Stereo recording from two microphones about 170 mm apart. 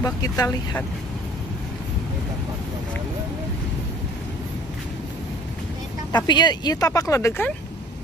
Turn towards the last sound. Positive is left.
turn(degrees=15)  # may be behind; listen again after turning